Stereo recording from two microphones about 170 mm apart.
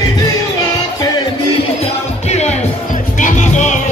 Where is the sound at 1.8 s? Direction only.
40° left (ahead or behind).